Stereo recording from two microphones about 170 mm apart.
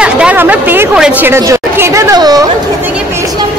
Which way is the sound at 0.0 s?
5° right (ahead or behind).